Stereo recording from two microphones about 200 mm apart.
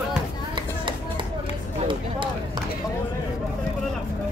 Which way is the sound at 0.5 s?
25° right (ahead or behind).